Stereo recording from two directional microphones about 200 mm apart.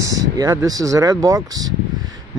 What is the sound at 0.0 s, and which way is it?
Speech, 15° right (ahead or behind).